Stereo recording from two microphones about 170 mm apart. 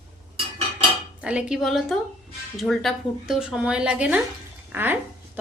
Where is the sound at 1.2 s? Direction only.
5° right (ahead or behind).